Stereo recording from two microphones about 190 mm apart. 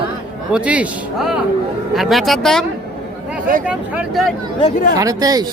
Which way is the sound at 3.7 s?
5° right (ahead or behind).